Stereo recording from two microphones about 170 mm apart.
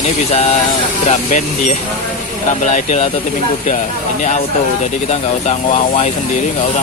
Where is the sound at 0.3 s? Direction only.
40° left (ahead or behind).